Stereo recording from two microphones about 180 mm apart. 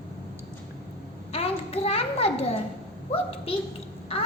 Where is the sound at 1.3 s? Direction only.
35° left (ahead or behind).